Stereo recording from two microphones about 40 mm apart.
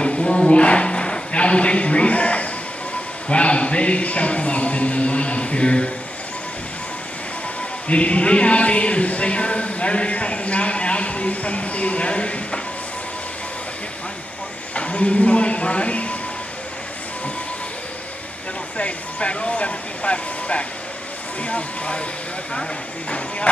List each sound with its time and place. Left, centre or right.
0.0 s a sound: left
3.3 s speech: left
7.9 s a man's voice: left
14.8 s a man's voice: left
18.8 s a man's voice: left
22.5 s speech: centre